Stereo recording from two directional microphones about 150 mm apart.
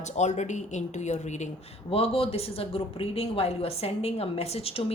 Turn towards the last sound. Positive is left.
turn(degrees=40)  # may be behind; listen again after turning